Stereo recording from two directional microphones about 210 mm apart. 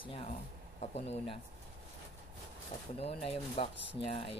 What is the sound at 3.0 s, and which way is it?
Speech, 30° left (ahead or behind).